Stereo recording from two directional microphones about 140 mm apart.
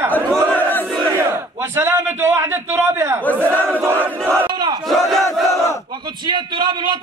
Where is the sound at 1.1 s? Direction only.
20° right (ahead or behind).